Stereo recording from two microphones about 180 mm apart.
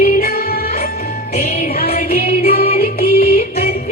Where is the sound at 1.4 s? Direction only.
40° left (ahead or behind).